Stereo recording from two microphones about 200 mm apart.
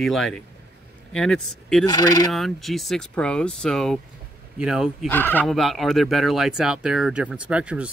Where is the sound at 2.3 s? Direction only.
Centre (ahead or behind).